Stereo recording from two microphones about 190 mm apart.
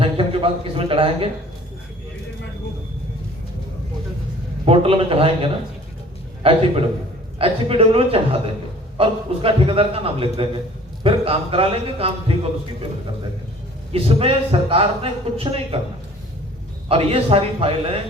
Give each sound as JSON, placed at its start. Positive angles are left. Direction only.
{"t": 0.0, "sound": "a man's voice", "side_deg": -30}
{"t": 4.6, "sound": "a man's voice", "side_deg": -30}
{"t": 13.9, "sound": "a man's voice", "side_deg": -30}
{"t": 16.9, "sound": "a man's voice", "side_deg": -30}